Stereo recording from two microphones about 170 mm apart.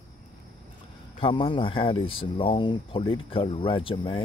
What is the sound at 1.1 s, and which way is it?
Speech, 30° left (ahead or behind).